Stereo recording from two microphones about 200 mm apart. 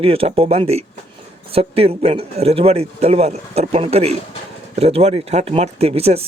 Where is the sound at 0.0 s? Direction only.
30° right (ahead or behind).